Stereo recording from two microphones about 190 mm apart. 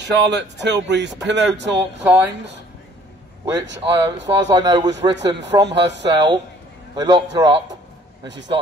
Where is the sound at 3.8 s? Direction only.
25° right (ahead or behind).